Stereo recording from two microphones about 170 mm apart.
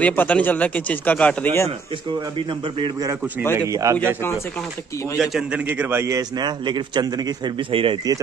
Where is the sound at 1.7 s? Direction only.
30° right (ahead or behind).